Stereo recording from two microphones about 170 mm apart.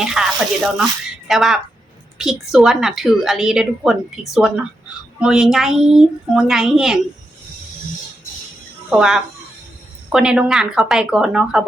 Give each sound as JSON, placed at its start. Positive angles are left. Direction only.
{"t": 0.0, "sound": "a woman's voice", "side_deg": -5}
{"t": 8.9, "sound": "a woman's voice", "side_deg": 0}